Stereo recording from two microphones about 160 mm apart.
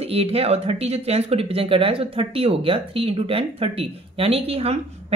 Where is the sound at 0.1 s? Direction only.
40° right (ahead or behind).